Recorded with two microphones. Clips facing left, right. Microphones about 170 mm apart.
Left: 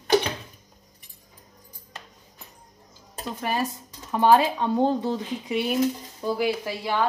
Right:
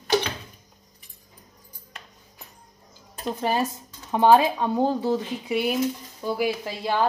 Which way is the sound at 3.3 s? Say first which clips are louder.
Right 3 dB; 25° right (ahead or behind).